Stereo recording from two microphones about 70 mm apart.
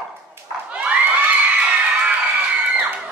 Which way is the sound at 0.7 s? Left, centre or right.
Centre.